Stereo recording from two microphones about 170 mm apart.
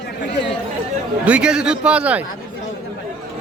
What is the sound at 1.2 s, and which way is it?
A man's voice, 5° right (ahead or behind).